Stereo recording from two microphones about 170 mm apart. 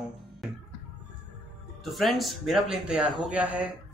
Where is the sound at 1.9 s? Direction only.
Centre (ahead or behind).